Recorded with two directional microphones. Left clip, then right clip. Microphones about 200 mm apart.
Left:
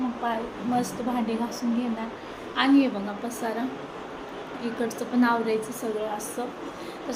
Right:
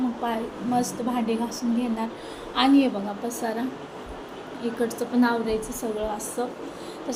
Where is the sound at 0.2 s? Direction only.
15° right (ahead or behind).